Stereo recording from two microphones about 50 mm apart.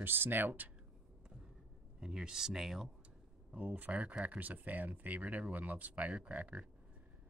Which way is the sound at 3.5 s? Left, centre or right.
Right.